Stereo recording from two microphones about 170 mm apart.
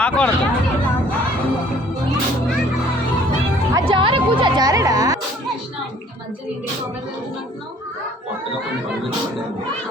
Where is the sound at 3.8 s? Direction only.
30° right (ahead or behind).